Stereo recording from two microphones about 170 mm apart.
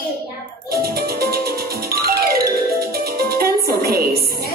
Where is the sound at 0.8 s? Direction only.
65° right (ahead or behind).